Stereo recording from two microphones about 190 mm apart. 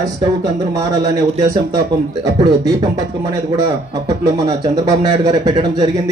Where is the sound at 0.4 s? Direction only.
20° right (ahead or behind).